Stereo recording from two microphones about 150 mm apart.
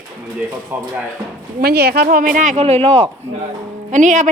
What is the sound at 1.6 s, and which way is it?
A woman's voice, 90° right.